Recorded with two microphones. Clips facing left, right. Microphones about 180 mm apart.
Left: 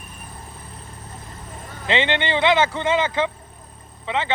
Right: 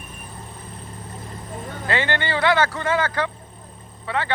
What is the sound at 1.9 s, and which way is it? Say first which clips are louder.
Speech: left 3 dB; 20° left (ahead or behind).